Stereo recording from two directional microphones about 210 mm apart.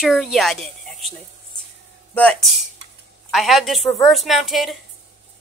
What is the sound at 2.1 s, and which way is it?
A woman's voice, 5° left (ahead or behind).